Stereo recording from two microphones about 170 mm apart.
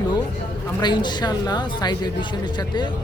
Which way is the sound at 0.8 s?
25° left (ahead or behind).